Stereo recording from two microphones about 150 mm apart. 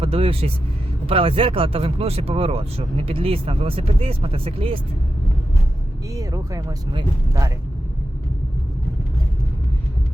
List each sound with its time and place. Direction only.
0.0 s speech: 40° right (ahead or behind)
6.1 s speech: 20° right (ahead or behind)